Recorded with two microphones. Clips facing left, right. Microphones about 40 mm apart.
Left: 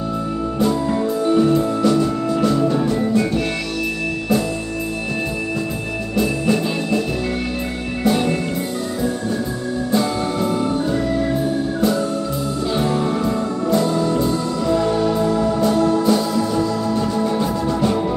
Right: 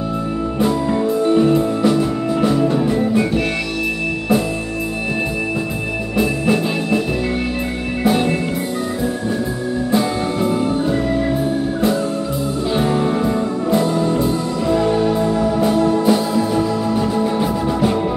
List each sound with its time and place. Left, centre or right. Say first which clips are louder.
1.2 s music: right 1 dB; centre
6.1 s music: right 1 dB; right
8.0 s music: right 1 dB; centre
9.9 s music: right 1 dB; centre
12.7 s music: right 3 dB; centre